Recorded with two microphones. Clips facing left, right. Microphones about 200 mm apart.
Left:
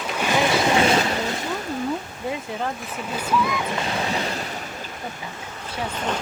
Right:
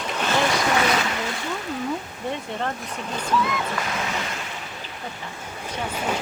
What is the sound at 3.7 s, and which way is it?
Speech, 30° left (ahead or behind).